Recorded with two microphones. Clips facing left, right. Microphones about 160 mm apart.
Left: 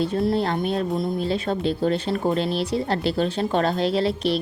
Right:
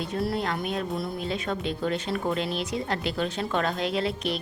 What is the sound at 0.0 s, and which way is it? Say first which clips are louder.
A woman's voice: left 6 dB; 25° left (ahead or behind).